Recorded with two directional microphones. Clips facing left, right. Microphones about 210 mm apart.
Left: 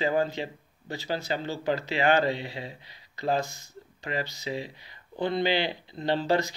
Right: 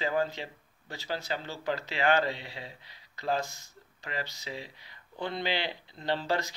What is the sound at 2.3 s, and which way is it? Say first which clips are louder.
Speech: left 8 dB; 50° left (ahead or behind).